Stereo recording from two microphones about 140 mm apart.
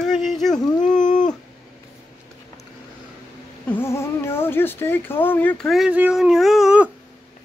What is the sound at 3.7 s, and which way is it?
Speech, 15° left (ahead or behind).